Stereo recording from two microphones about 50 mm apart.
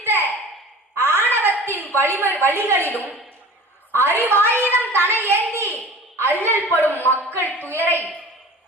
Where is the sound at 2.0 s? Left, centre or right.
Right.